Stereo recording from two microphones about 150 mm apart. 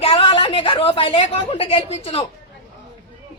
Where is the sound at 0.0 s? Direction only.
35° left (ahead or behind).